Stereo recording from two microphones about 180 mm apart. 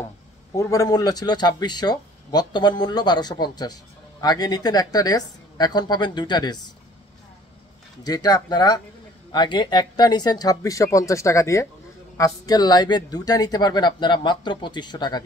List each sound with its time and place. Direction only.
0.6 s a man's voice: 20° left (ahead or behind)
8.0 s a man's voice: 20° left (ahead or behind)